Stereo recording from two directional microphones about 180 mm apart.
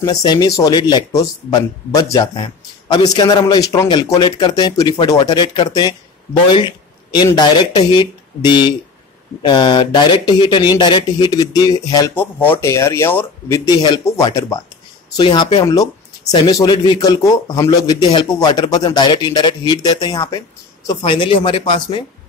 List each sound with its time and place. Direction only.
0.0 s speech: 25° left (ahead or behind)
13.7 s speech: 25° left (ahead or behind)